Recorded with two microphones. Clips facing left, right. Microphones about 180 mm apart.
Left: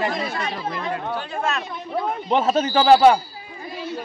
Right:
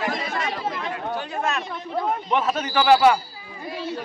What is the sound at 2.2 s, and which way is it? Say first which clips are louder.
Speech: left 4 dB; 30° left (ahead or behind).